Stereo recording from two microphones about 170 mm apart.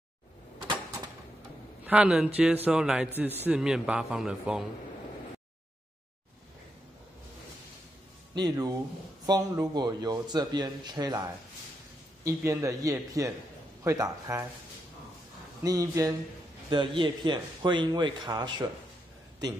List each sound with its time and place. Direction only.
0.6 s a sound: 25° right (ahead or behind)
1.9 s a man's voice: 5° right (ahead or behind)
8.4 s a man's voice: 20° right (ahead or behind)
15.6 s a man's voice: 20° right (ahead or behind)
16.6 s a man's voice: 30° right (ahead or behind)